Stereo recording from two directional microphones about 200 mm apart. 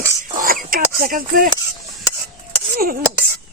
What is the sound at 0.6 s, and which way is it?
Speech, 45° right (ahead or behind).